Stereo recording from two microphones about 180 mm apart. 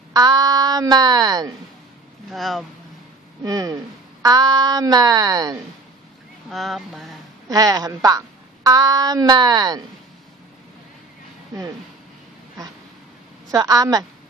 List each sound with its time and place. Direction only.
0.1 s speech: 20° right (ahead or behind)
2.2 s speech: centre (ahead or behind)
3.4 s a woman's voice: 20° right (ahead or behind)
6.5 s a sound: centre (ahead or behind)
7.4 s a woman's voice: 20° right (ahead or behind)
13.5 s a woman's voice: 20° right (ahead or behind)